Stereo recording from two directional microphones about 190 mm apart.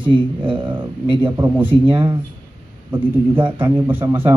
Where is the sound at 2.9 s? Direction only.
10° right (ahead or behind).